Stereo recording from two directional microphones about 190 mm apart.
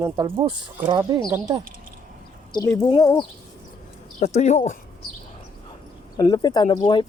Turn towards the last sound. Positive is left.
turn(degrees=25)  # may be behind; listen again after turning